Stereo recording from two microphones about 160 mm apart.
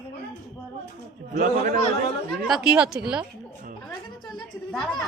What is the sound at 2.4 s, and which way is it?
Speech, 5° right (ahead or behind).